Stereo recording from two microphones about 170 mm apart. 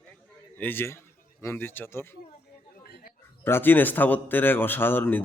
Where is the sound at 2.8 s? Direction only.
65° left (ahead or behind).